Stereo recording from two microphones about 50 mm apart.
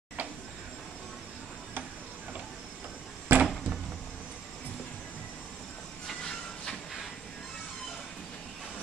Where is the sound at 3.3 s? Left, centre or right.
Right.